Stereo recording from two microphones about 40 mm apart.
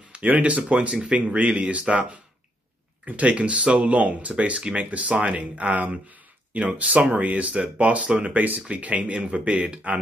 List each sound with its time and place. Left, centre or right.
0.2 s speech: right
1.2 s speech: right
3.9 s speech: right
5.4 s speech: right
8.3 s speech: right